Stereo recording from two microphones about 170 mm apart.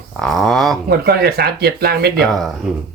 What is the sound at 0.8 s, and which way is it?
Speech, 65° right (ahead or behind).